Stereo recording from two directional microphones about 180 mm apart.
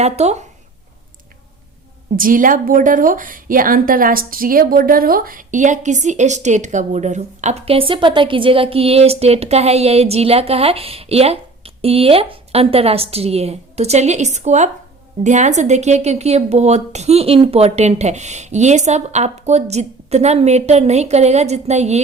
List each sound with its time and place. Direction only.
0.0 s a woman's voice: 35° right (ahead or behind)
2.1 s a woman's voice: 50° right (ahead or behind)